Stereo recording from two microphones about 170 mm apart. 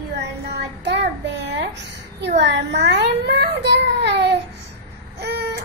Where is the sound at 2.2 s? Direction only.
90° right.